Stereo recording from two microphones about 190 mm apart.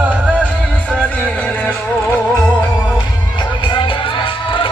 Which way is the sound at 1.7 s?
5° left (ahead or behind).